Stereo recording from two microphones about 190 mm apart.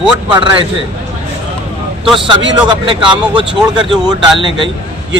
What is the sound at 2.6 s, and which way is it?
A man's voice, 25° right (ahead or behind).